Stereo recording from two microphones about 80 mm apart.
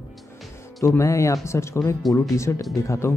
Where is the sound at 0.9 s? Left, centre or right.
Left.